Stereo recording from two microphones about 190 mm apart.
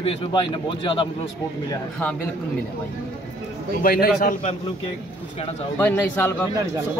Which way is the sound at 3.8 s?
50° left (ahead or behind).